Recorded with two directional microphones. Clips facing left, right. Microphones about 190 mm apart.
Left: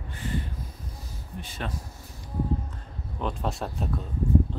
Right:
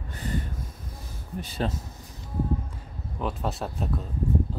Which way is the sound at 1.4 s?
35° right (ahead or behind).